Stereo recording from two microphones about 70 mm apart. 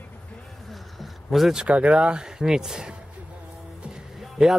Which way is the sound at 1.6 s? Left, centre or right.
Centre.